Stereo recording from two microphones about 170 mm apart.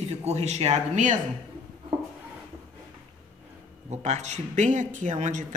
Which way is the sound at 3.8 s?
40° right (ahead or behind).